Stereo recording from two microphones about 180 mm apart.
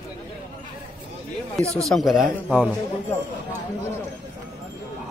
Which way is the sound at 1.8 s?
Centre (ahead or behind).